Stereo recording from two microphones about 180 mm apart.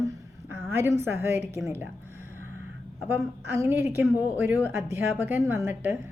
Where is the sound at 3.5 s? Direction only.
10° right (ahead or behind).